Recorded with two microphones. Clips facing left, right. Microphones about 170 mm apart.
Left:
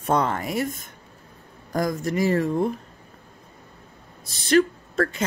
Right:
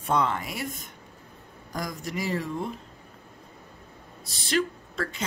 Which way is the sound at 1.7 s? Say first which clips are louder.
Left 9 dB; 50° left (ahead or behind).